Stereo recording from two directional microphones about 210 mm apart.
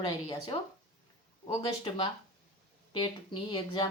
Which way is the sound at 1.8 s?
25° left (ahead or behind).